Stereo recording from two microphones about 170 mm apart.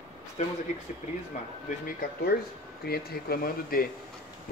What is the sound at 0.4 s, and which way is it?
Speech, 40° left (ahead or behind).